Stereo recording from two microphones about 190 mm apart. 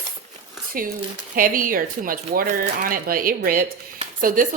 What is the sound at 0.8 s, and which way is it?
A woman's voice, 50° right (ahead or behind).